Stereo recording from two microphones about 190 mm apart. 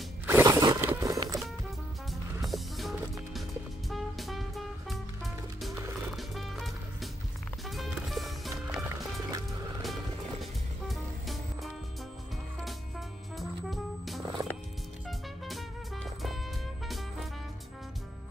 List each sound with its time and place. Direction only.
0.3 s scrape: 15° right (ahead or behind)
0.8 s music: 15° right (ahead or behind)
2.4 s music: centre (ahead or behind)
10.4 s music: centre (ahead or behind)
13.4 s music: centre (ahead or behind)